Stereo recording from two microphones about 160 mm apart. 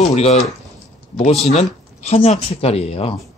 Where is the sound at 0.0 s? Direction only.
40° left (ahead or behind).